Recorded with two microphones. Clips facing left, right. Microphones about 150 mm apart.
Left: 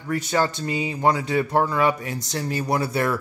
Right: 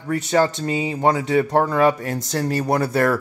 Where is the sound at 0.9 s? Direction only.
40° right (ahead or behind).